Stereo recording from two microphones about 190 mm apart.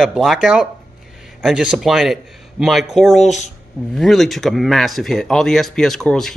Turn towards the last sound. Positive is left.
turn(degrees=5)  # may be behind; listen again after turning